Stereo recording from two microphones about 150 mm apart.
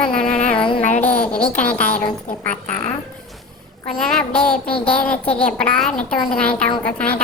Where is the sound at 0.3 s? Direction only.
55° left (ahead or behind).